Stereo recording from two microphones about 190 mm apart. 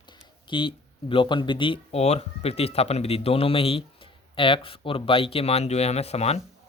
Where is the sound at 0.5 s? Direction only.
25° left (ahead or behind).